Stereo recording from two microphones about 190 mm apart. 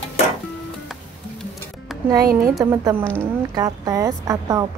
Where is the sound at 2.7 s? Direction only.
15° right (ahead or behind).